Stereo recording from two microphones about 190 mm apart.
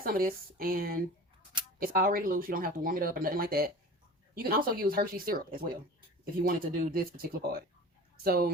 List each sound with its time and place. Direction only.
0.0 s speech: 50° right (ahead or behind)